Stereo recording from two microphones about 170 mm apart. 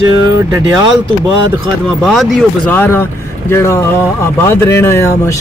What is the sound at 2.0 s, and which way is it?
Speech, centre (ahead or behind).